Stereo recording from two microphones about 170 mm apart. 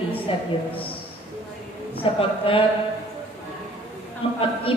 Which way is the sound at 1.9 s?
35° left (ahead or behind).